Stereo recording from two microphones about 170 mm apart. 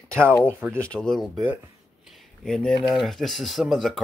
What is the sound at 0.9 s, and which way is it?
Speech, 5° left (ahead or behind).